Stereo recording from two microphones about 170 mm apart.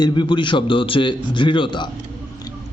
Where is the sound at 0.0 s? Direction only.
25° left (ahead or behind).